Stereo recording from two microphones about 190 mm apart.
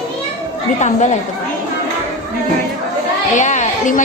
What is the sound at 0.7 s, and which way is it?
Speech, 35° left (ahead or behind).